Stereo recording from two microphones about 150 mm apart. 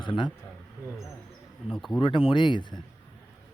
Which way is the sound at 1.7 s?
Centre (ahead or behind).